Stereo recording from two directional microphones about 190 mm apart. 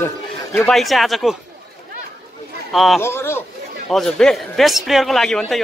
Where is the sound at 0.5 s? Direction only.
Centre (ahead or behind).